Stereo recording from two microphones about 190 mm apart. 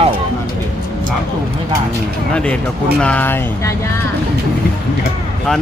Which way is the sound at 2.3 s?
5° left (ahead or behind).